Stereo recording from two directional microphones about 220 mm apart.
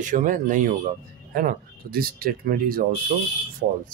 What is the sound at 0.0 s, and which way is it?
Speech, 35° right (ahead or behind).